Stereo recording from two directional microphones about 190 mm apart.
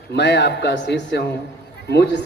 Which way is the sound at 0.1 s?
65° left (ahead or behind).